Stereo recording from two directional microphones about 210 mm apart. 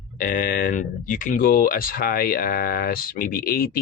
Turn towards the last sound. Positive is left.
turn(degrees=45)  # may be behind; listen again after turning